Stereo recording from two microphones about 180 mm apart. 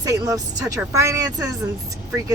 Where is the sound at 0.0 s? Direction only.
20° right (ahead or behind).